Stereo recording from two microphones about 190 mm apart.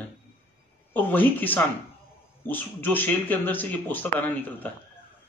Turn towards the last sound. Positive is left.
turn(degrees=10)  # may be behind; listen again after turning